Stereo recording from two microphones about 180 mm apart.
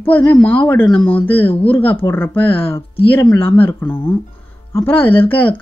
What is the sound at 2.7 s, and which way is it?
Speech, 30° left (ahead or behind).